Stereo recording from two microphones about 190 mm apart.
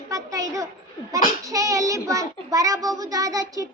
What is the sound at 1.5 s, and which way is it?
A child's voice, 15° right (ahead or behind).